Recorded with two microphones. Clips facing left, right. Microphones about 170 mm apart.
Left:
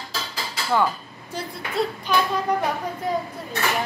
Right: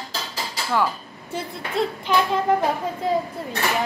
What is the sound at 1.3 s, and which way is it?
A woman's voice, 25° right (ahead or behind).